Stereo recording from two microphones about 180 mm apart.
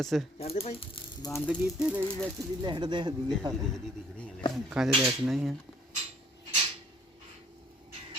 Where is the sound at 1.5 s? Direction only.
5° right (ahead or behind).